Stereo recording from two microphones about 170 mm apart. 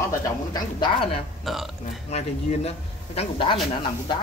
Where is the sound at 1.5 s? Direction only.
Centre (ahead or behind).